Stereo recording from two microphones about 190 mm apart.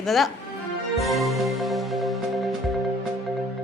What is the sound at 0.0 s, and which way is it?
Speech, centre (ahead or behind).